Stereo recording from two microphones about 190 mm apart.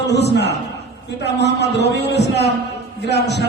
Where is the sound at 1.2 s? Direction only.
60° left (ahead or behind).